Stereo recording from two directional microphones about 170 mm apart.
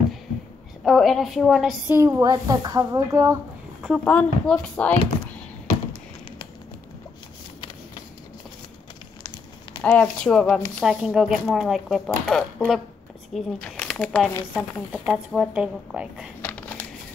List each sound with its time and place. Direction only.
0.8 s a woman's voice: centre (ahead or behind)
1.9 s speech: 15° right (ahead or behind)
4.0 s speech: 5° left (ahead or behind)
9.8 s a woman's voice: 5° left (ahead or behind)
14.9 s a woman's voice: 5° right (ahead or behind)
16.3 s crumpling: 10° left (ahead or behind)